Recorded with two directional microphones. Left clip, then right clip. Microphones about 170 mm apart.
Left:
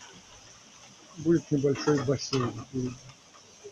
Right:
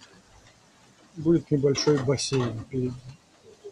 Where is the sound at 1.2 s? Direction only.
40° right (ahead or behind).